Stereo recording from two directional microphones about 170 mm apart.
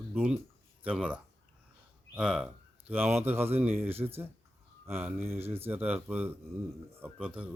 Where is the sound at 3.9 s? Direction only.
35° right (ahead or behind).